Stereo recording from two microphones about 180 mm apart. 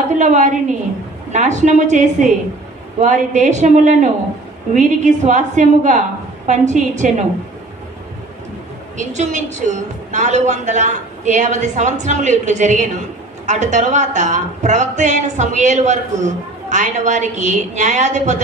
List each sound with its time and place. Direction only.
0.2 s a woman's voice: 45° right (ahead or behind)
8.9 s a woman's voice: 40° right (ahead or behind)